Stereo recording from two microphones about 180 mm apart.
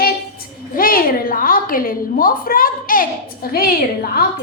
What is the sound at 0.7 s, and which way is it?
A woman's voice, 50° left (ahead or behind).